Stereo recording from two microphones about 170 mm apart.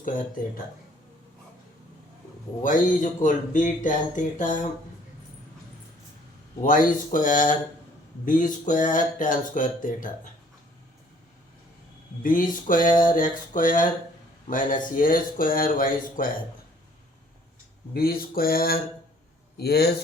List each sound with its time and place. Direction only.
2.6 s speech: 50° left (ahead or behind)
6.6 s speech: 55° left (ahead or behind)
12.2 s speech: 50° left (ahead or behind)
17.9 s a man's voice: 60° left (ahead or behind)